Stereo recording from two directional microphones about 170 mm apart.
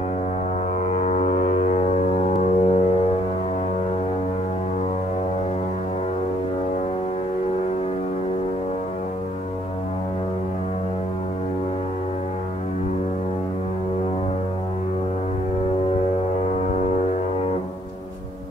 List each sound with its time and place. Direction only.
0.8 s foghorn: 40° left (ahead or behind)